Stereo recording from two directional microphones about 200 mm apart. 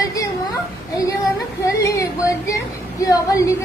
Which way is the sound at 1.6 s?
15° left (ahead or behind).